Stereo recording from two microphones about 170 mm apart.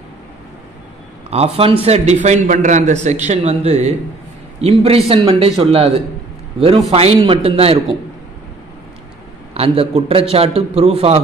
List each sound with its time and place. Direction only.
1.3 s a man's voice: 35° right (ahead or behind)
6.9 s a man's voice: 35° right (ahead or behind)
9.5 s a man's voice: 35° right (ahead or behind)